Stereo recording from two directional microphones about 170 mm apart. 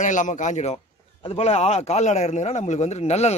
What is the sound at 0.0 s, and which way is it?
A man's voice, 45° left (ahead or behind).